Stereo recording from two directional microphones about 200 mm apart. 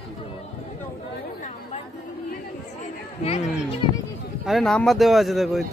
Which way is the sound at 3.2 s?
30° left (ahead or behind).